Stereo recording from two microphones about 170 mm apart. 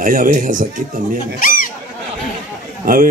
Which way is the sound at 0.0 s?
55° right (ahead or behind).